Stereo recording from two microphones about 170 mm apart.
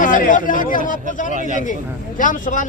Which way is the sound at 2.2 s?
50° left (ahead or behind).